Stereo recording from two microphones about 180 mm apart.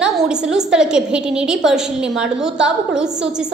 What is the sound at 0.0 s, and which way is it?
A woman's voice, 5° right (ahead or behind).